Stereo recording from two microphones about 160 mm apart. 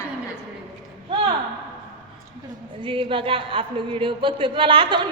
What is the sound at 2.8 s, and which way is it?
Speech, 30° right (ahead or behind).